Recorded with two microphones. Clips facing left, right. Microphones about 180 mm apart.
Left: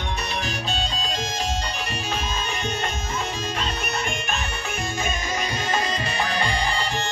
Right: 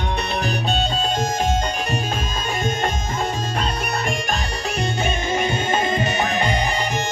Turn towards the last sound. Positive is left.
turn(degrees=-20)  # may be behind; listen again after turning